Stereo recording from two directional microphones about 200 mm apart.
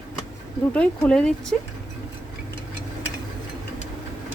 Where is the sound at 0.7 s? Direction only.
5° left (ahead or behind).